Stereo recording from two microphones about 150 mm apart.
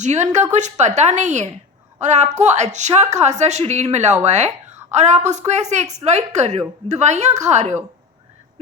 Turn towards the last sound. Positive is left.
turn(degrees=-50)  # may be behind; listen again after turning